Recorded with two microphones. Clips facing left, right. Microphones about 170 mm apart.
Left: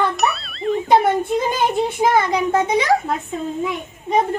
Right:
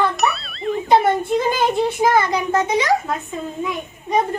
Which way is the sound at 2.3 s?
25° left (ahead or behind).